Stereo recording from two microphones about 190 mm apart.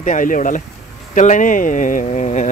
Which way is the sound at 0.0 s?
40° left (ahead or behind).